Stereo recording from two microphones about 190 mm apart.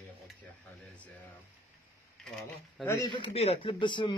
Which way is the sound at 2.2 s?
5° left (ahead or behind).